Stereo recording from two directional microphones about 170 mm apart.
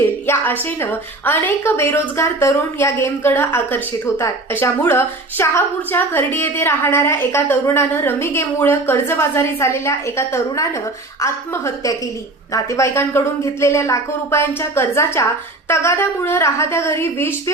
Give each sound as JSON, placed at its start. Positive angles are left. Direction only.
{"t": 0.3, "sound": "a woman's voice", "side_deg": 10}